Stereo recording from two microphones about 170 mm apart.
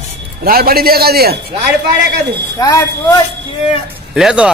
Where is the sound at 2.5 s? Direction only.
20° left (ahead or behind).